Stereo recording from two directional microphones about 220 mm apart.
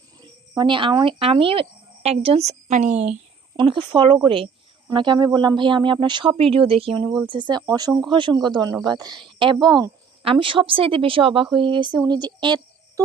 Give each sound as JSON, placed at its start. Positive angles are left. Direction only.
{"t": 0.2, "sound": "speech", "side_deg": -20}
{"t": 3.6, "sound": "speech", "side_deg": -20}